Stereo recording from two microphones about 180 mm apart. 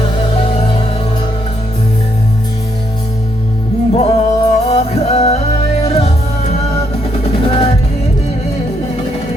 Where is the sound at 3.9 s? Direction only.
35° left (ahead or behind).